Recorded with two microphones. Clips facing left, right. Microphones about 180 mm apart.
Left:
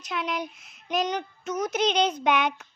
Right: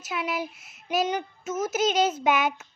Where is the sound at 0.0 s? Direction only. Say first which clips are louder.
Even; 5° right (ahead or behind).